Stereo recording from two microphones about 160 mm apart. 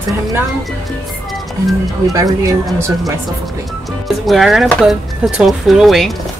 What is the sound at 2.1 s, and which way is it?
Speech, 20° right (ahead or behind).